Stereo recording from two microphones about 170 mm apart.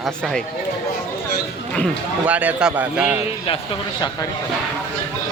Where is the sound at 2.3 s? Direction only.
10° right (ahead or behind).